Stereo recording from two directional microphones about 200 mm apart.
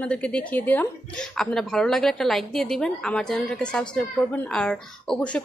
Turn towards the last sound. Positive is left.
turn(degrees=5)  # may be behind; listen again after turning